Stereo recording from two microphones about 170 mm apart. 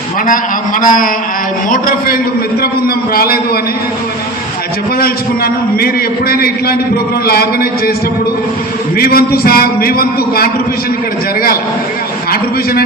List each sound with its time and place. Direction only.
0.8 s a man's voice: 55° left (ahead or behind)
4.9 s a man's voice: 65° left (ahead or behind)
9.0 s a man's voice: 65° left (ahead or behind)